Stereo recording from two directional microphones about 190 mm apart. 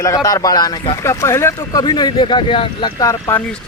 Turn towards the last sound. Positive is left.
turn(degrees=15)  # may be behind; listen again after turning